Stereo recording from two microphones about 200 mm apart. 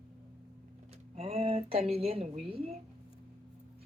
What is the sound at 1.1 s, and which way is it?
Speech, 30° right (ahead or behind).